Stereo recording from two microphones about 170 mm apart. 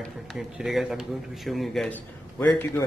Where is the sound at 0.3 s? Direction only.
Centre (ahead or behind).